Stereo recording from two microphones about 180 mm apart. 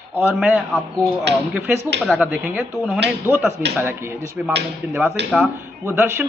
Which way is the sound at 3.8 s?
15° right (ahead or behind).